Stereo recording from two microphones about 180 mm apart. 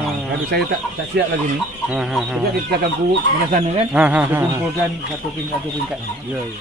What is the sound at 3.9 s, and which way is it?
Speech, 10° right (ahead or behind).